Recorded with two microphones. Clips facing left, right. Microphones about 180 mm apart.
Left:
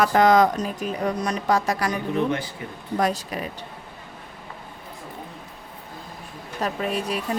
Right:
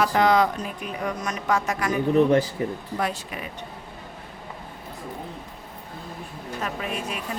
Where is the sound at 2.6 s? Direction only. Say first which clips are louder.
Right 9 dB; 35° right (ahead or behind).